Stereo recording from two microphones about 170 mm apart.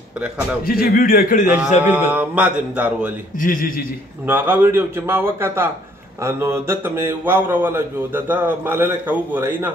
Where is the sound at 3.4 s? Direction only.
50° left (ahead or behind).